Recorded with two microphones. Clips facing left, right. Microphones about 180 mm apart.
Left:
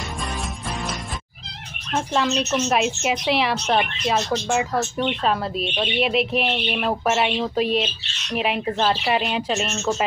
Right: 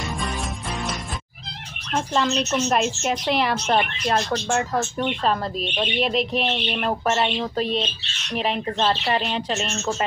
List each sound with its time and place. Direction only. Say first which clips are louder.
2.0 s a woman's voice: even; 5° left (ahead or behind)